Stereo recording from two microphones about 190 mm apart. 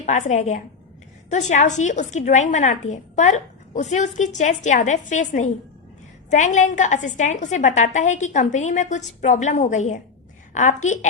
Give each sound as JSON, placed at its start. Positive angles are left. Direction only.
{"t": 0.0, "sound": "a woman's voice", "side_deg": 40}